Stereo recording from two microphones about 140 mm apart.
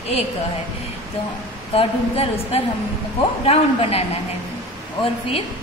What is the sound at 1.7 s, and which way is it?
A woman's voice, 45° left (ahead or behind).